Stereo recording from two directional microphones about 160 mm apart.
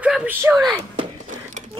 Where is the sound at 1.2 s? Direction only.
50° right (ahead or behind).